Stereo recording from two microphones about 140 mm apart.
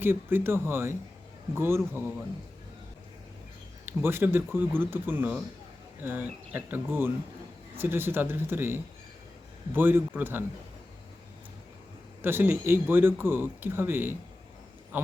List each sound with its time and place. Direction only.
0.0 s speech: 15° right (ahead or behind)
3.8 s speech: 15° right (ahead or behind)
12.2 s speech: 15° right (ahead or behind)
14.9 s a sound: 15° right (ahead or behind)